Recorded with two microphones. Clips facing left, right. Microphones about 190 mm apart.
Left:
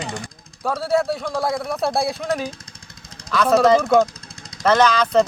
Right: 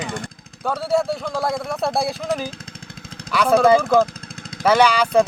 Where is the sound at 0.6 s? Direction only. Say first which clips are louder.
Even; centre (ahead or behind).